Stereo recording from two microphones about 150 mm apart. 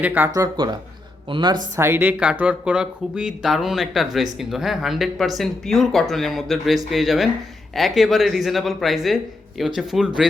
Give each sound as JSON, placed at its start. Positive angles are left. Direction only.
{"t": 0.0, "sound": "speech", "side_deg": -10}
{"t": 0.3, "sound": "speech", "side_deg": -25}
{"t": 1.7, "sound": "speech", "side_deg": -15}